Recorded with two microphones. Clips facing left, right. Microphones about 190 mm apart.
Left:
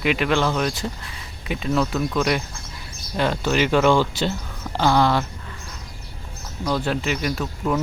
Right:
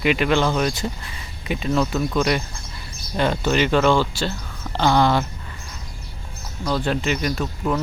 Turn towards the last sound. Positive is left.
turn(degrees=5)  # may be behind; listen again after turning